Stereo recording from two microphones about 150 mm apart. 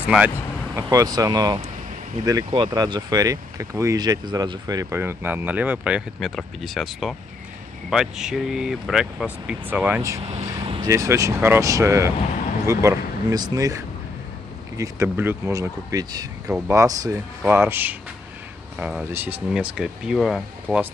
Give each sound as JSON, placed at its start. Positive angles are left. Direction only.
{"t": 0.0, "sound": "speech", "side_deg": -10}
{"t": 0.7, "sound": "speech", "side_deg": -20}
{"t": 6.1, "sound": "speech", "side_deg": 0}
{"t": 16.5, "sound": "speech", "side_deg": -10}